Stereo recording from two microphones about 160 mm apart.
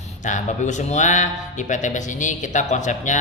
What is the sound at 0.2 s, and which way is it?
A man's voice, 50° left (ahead or behind).